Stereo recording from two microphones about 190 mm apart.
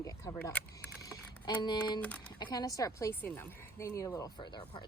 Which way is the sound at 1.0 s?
25° left (ahead or behind).